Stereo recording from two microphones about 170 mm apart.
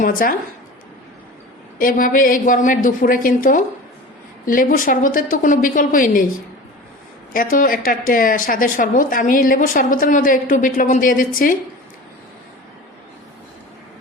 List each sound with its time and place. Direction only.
0.0 s a woman's voice: 55° left (ahead or behind)
1.8 s speech: 55° left (ahead or behind)
7.3 s speech: 55° left (ahead or behind)